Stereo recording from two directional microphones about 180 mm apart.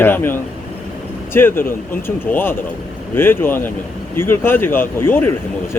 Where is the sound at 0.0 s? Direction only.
10° left (ahead or behind).